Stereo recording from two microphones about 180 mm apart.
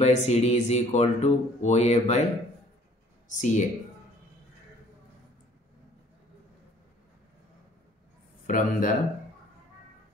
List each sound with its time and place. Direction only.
0.0 s speech: 40° left (ahead or behind)
3.3 s speech: 45° left (ahead or behind)
8.5 s speech: 50° left (ahead or behind)